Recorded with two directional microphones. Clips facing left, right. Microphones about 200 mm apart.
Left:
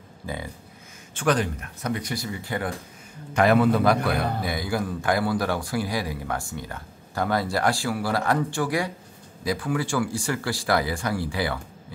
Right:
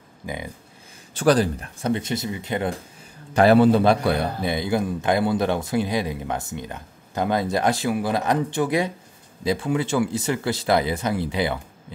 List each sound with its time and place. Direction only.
0.2 s speech: 15° right (ahead or behind)
1.1 s a man's voice: 35° right (ahead or behind)
3.3 s a man's voice: 30° right (ahead or behind)